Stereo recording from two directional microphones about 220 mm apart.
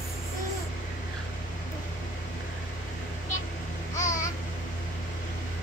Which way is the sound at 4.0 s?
35° left (ahead or behind).